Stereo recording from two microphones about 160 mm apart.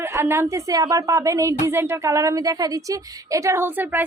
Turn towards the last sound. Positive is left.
turn(degrees=-10)  # may be behind; listen again after turning